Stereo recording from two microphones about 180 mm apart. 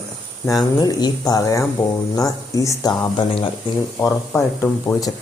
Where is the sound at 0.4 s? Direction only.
20° left (ahead or behind).